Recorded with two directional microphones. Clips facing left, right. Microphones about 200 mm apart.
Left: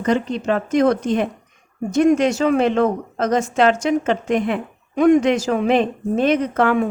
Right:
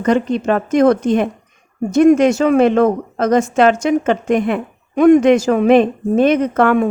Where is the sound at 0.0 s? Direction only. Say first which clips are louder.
Right 4 dB; 55° right (ahead or behind).